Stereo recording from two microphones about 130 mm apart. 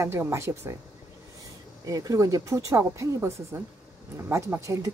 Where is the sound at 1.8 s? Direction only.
30° right (ahead or behind).